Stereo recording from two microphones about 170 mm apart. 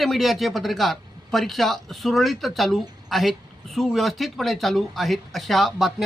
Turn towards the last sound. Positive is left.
turn(degrees=0)  # may be behind; listen again after turning